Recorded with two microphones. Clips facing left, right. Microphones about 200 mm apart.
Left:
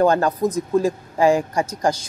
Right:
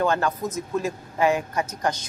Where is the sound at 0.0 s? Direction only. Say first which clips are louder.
Left 6 dB; 35° left (ahead or behind).